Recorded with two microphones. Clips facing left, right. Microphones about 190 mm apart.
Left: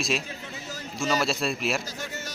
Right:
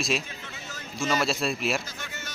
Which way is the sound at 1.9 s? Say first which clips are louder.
Left 4 dB; 40° left (ahead or behind).